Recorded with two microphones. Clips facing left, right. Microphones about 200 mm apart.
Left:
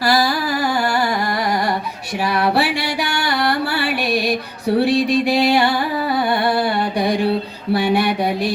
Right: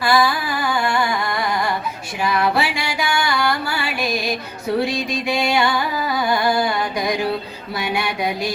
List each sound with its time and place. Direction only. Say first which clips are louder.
0.0 s a sound: left 1 dB; 40° left (ahead or behind)
2.3 s music: left 2 dB; 35° left (ahead or behind)
5.3 s music: left 4 dB; 35° left (ahead or behind)
6.4 s mantra: left 1 dB; 30° left (ahead or behind)
7.7 s music: left 7 dB; 35° left (ahead or behind)